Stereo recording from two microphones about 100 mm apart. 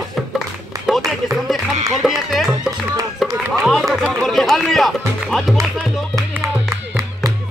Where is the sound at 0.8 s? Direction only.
Centre (ahead or behind).